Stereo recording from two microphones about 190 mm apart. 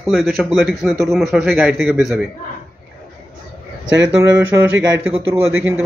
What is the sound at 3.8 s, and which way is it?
Speech, 70° right (ahead or behind).